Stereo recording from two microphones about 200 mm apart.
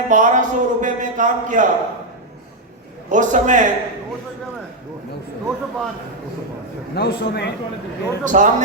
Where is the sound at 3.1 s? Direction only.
40° right (ahead or behind).